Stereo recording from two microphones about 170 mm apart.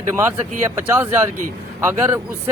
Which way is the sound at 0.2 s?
15° right (ahead or behind).